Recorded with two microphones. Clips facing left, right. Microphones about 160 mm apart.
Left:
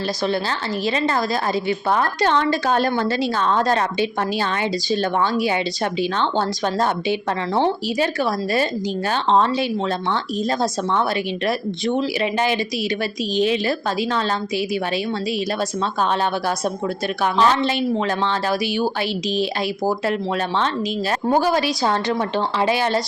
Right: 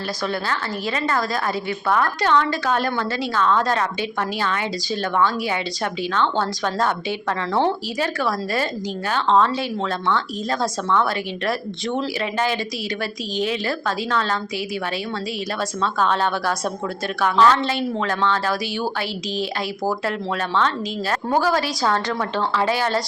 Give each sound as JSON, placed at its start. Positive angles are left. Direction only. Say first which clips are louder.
{"t": 1.9, "sound": "a woman's voice", "louder": "right 1 dB", "side_deg": 30}
{"t": 4.9, "sound": "a woman's voice", "louder": "even", "side_deg": 25}
{"t": 6.7, "sound": "a woman's voice", "louder": "left 3 dB", "side_deg": 20}
{"t": 11.4, "sound": "a woman's voice", "louder": "left 2 dB", "side_deg": 20}
{"t": 17.2, "sound": "a woman's voice", "louder": "right 1 dB", "side_deg": 20}
{"t": 19.4, "sound": "a woman's voice", "louder": "left 1 dB", "side_deg": 20}
{"t": 21.2, "sound": "a woman's voice", "louder": "left 2 dB", "side_deg": 20}